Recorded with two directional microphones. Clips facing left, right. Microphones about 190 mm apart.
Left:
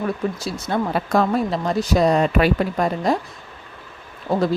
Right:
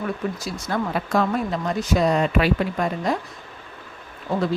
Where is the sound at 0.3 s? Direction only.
30° left (ahead or behind).